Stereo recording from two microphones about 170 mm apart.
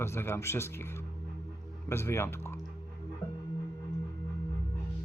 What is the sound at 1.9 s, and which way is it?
Speech, 15° left (ahead or behind).